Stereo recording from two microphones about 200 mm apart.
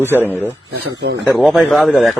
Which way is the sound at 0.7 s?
55° right (ahead or behind).